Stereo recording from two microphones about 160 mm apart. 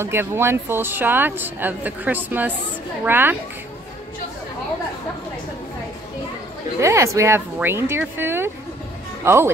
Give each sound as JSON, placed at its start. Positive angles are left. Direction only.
{"t": 0.0, "sound": "speech", "side_deg": -15}
{"t": 6.8, "sound": "speech", "side_deg": -20}